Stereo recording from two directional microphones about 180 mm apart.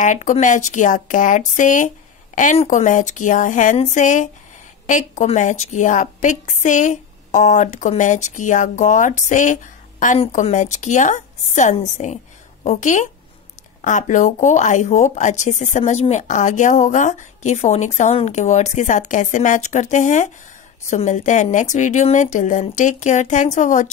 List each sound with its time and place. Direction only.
0.0 s speech: 45° left (ahead or behind)